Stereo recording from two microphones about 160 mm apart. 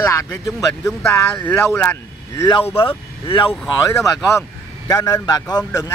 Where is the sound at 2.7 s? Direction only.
35° left (ahead or behind).